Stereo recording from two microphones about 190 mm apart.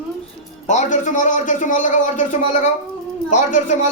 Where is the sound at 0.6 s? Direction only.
40° left (ahead or behind).